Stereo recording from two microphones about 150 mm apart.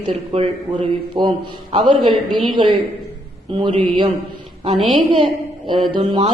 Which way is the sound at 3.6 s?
35° right (ahead or behind).